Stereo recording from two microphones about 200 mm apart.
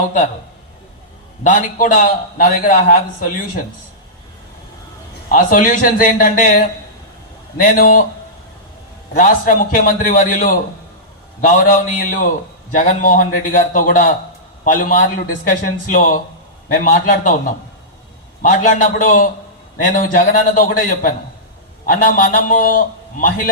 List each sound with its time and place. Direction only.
1.5 s a man's voice: 40° left (ahead or behind)
5.3 s a man's voice: 40° left (ahead or behind)
9.1 s a man's voice: 40° left (ahead or behind)